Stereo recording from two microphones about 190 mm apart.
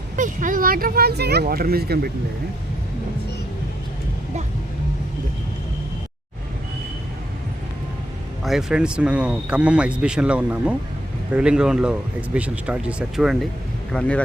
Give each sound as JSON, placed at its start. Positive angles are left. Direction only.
{"t": 0.2, "sound": "speech", "side_deg": -45}
{"t": 8.4, "sound": "speech", "side_deg": -5}